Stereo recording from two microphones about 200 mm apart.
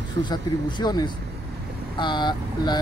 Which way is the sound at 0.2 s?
20° left (ahead or behind).